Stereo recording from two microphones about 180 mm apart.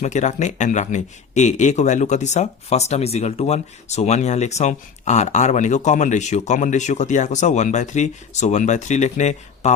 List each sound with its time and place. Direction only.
0.0 s speech: 40° left (ahead or behind)